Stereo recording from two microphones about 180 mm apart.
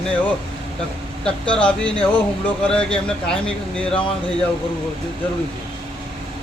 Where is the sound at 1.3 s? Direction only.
5° left (ahead or behind).